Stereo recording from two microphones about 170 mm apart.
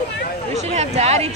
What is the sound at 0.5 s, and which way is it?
Speech, 40° right (ahead or behind).